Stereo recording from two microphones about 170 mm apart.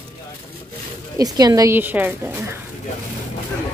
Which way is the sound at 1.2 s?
20° right (ahead or behind).